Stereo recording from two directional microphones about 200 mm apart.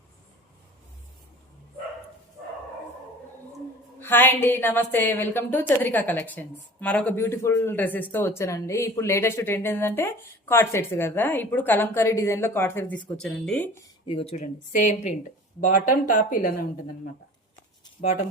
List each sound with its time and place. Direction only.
4.0 s a woman's voice: 10° left (ahead or behind)
14.0 s speech: 25° left (ahead or behind); by 16.6 s 40° left (ahead or behind)